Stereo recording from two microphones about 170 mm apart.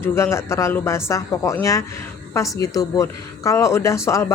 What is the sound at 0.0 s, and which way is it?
A woman's voice, 15° left (ahead or behind).